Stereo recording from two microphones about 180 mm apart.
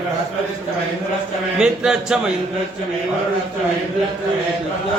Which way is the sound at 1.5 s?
5° right (ahead or behind).